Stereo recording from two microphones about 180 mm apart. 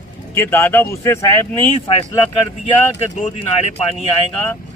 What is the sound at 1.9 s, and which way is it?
Speech, 35° left (ahead or behind).